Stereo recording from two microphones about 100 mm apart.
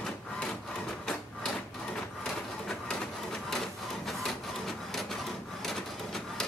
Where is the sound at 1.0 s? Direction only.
5° left (ahead or behind).